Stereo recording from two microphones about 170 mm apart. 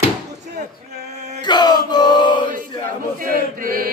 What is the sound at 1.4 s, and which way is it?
Chant, 25° left (ahead or behind).